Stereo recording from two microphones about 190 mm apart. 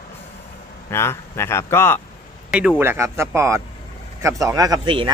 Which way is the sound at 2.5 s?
5° right (ahead or behind).